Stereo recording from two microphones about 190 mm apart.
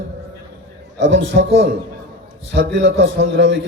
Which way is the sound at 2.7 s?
75° right (ahead or behind).